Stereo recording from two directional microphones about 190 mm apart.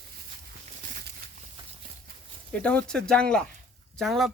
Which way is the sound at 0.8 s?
55° right (ahead or behind).